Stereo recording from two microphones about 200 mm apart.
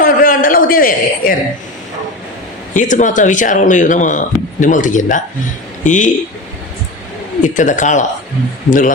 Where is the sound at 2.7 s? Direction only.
40° left (ahead or behind).